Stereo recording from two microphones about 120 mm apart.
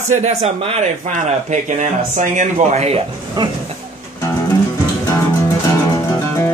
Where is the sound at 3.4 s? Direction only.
35° right (ahead or behind).